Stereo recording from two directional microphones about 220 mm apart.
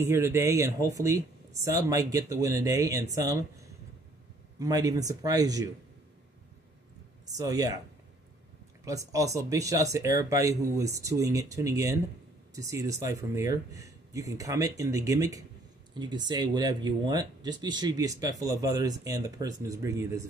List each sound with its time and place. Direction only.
0.0 s speech: 10° right (ahead or behind)
7.2 s speech: 15° right (ahead or behind)
8.8 s speech: 15° right (ahead or behind)